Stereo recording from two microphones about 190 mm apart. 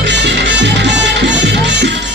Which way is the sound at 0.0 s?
70° right (ahead or behind).